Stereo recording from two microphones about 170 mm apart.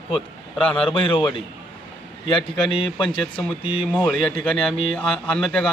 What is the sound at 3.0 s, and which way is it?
Speech, centre (ahead or behind).